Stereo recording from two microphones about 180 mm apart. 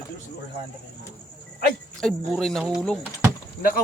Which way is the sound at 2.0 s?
5° left (ahead or behind).